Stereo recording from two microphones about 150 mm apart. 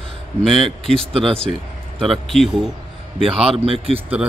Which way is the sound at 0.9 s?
40° right (ahead or behind).